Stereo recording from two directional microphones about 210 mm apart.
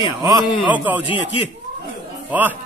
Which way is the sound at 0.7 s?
10° right (ahead or behind).